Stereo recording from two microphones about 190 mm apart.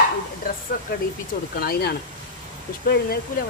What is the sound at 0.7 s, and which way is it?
Speech, 45° left (ahead or behind).